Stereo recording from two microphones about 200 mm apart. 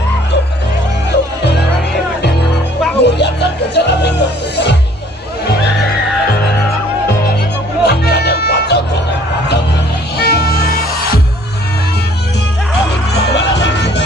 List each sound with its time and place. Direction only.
3.0 s music: 60° left (ahead or behind)
7.8 s music: 55° left (ahead or behind)
10.1 s music: 50° left (ahead or behind)
13.1 s music: 60° left (ahead or behind)